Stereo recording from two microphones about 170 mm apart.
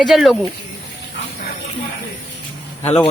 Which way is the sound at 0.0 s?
Centre (ahead or behind).